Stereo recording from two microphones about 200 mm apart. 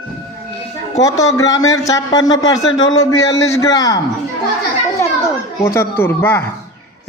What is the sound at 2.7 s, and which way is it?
Speech, 75° left (ahead or behind).